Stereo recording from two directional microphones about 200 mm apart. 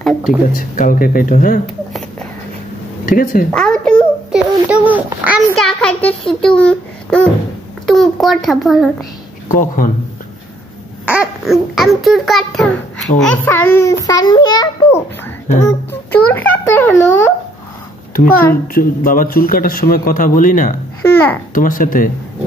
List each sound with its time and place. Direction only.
0.0 s a child's voice: 5° right (ahead or behind)
0.5 s a man's voice: 45° left (ahead or behind)
3.1 s a man's voice: 45° left (ahead or behind)
3.5 s a sound: 5° left (ahead or behind)
4.6 s a child's voice: 10° right (ahead or behind)
9.5 s a man's voice: 45° left (ahead or behind)
11.1 s a child's voice: 5° right (ahead or behind); by 15.0 s 20° left (ahead or behind)
15.6 s a child's voice: 5° left (ahead or behind)
18.7 s a man's voice: 45° left (ahead or behind)